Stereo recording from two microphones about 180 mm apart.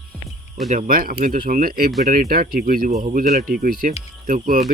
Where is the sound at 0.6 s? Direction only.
45° right (ahead or behind).